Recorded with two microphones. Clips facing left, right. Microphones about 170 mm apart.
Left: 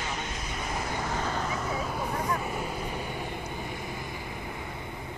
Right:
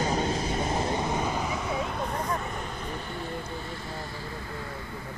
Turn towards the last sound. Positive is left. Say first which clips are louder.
# left 1 dB
turn(degrees=10)  # may be behind; listen again after turning